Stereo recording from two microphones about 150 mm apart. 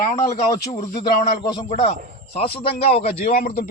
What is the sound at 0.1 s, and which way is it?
Speech, 50° left (ahead or behind).